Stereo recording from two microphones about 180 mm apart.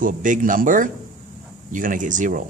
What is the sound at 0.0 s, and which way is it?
Speech, 45° right (ahead or behind).